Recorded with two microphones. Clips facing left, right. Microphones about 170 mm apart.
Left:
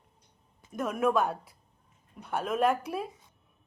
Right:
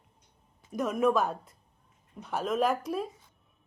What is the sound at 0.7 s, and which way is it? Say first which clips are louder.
Speech: right 1 dB; 5° left (ahead or behind).